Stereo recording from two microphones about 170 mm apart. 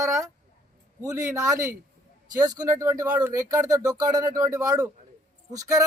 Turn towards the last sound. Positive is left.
turn(degrees=-20)  # may be behind; listen again after turning